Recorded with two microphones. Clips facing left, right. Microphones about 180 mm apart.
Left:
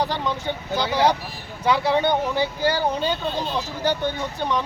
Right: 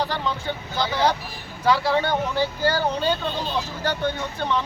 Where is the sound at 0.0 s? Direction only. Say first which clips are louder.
Left 2 dB; 20° left (ahead or behind).